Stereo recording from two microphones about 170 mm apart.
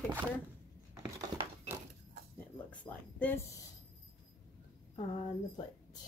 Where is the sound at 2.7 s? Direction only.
10° left (ahead or behind).